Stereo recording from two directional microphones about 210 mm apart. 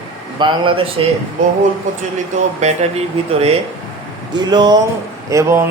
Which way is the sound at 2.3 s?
35° right (ahead or behind).